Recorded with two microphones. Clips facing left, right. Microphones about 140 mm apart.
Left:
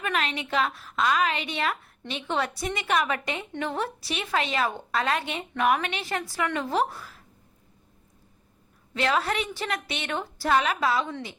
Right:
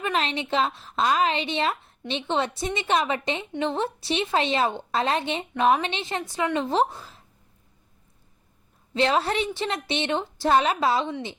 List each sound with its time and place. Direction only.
0.0 s a woman's voice: 30° right (ahead or behind)
8.9 s a woman's voice: 25° right (ahead or behind)